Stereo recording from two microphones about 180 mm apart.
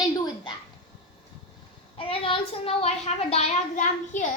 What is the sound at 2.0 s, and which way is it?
A child's voice, 30° left (ahead or behind).